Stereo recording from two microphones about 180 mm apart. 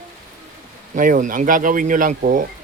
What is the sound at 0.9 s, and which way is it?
Speech, 45° right (ahead or behind).